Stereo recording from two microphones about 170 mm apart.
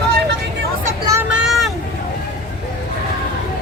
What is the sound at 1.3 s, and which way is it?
Vehicle, centre (ahead or behind).